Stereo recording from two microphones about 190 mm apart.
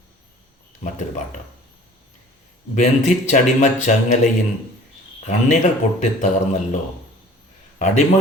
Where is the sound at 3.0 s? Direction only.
40° left (ahead or behind).